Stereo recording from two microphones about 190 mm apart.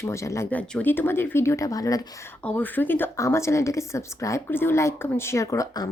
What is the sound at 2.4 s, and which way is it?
A woman's voice, 10° left (ahead or behind).